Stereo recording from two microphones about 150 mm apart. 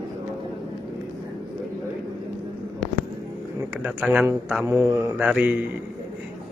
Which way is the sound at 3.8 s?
10° right (ahead or behind).